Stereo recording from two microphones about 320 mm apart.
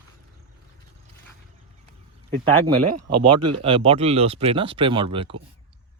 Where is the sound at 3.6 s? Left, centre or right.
Centre.